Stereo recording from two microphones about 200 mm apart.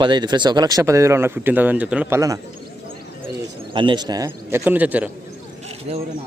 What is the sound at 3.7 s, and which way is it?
Speech, 25° right (ahead or behind).